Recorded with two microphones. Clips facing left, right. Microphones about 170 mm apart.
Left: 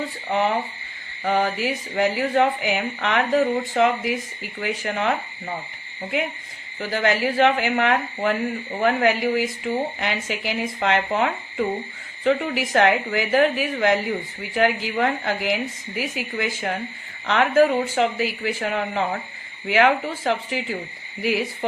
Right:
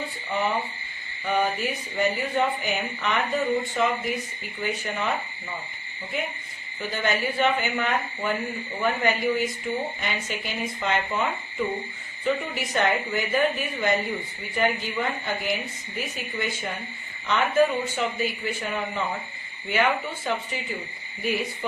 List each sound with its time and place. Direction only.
0.3 s speech: 80° left
6.7 s a woman's voice: 85° left
12.2 s a woman's voice: 90° left
19.6 s a woman's voice: 90° left